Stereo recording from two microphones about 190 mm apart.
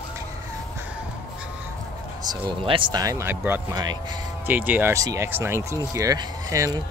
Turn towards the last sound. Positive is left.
turn(degrees=-20)  # may be behind; listen again after turning